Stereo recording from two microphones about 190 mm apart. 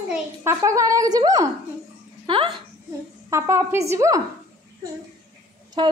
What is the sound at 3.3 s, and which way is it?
Speech, 15° right (ahead or behind).